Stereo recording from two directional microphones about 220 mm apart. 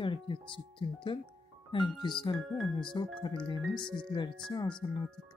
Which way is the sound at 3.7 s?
5° left (ahead or behind).